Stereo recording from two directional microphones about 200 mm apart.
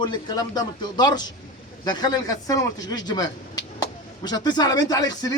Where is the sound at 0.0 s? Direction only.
20° left (ahead or behind).